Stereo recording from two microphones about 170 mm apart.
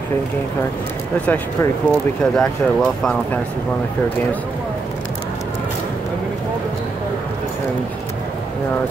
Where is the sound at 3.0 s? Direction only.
5° left (ahead or behind).